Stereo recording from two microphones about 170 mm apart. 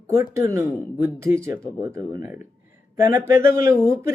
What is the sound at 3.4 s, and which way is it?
Speech, 15° right (ahead or behind).